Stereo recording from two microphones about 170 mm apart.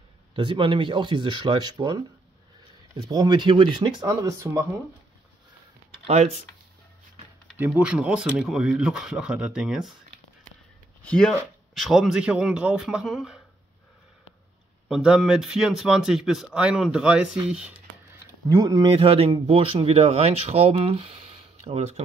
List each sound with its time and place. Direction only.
0.4 s speech: 30° right (ahead or behind)
6.0 s speech: 40° right (ahead or behind)
7.5 s a man's voice: 10° right (ahead or behind)
11.1 s a man's voice: 5° left (ahead or behind)
14.9 s a man's voice: 5° right (ahead or behind)
18.5 s speech: 20° right (ahead or behind); by 22.0 s 40° right (ahead or behind)